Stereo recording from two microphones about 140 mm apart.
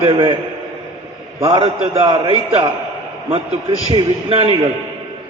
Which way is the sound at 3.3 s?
45° right (ahead or behind).